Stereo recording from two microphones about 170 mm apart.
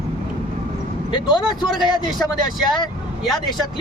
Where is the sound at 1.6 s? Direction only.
Centre (ahead or behind).